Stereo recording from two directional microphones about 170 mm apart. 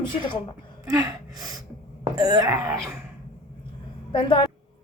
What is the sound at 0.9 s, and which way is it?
Gasp, 20° right (ahead or behind).